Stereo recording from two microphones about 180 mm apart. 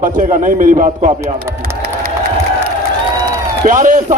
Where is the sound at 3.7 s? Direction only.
45° right (ahead or behind).